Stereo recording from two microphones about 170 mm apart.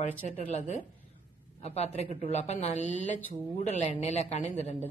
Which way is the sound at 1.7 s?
40° left (ahead or behind).